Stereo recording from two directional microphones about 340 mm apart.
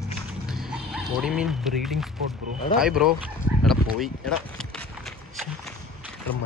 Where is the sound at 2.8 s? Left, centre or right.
Centre.